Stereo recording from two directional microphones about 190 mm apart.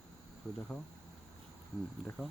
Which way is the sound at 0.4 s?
5° left (ahead or behind).